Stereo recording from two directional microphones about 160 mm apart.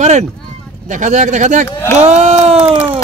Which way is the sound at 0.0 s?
45° right (ahead or behind).